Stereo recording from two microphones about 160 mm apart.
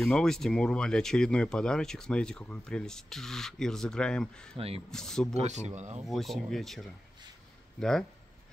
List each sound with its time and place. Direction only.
0.0 s speech: 5° left (ahead or behind)
4.6 s speech: 40° right (ahead or behind)
4.9 s speech: 5° left (ahead or behind)
5.4 s speech: 45° right (ahead or behind)
6.0 s speech: centre (ahead or behind)